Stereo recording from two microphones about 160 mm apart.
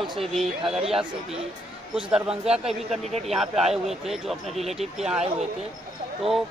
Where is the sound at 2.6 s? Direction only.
40° right (ahead or behind).